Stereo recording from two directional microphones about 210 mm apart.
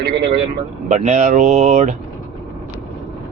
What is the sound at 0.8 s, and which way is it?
Speech, 35° right (ahead or behind).